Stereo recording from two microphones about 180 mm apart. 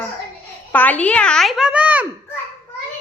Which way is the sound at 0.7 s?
10° left (ahead or behind).